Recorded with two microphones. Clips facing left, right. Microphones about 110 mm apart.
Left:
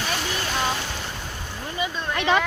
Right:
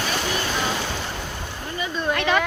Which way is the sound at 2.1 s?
20° left (ahead or behind).